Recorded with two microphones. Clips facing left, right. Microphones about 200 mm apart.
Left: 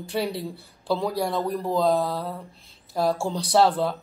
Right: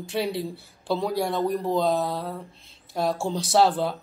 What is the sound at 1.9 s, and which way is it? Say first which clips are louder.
Mantra: left 2 dB; 25° right (ahead or behind).